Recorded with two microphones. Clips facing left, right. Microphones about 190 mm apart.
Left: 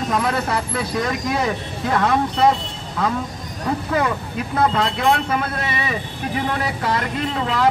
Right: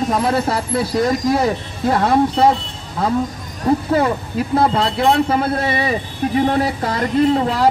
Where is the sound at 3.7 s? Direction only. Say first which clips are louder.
Right 5 dB; 30° right (ahead or behind).